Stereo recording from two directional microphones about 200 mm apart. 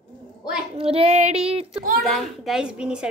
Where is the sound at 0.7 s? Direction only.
30° right (ahead or behind).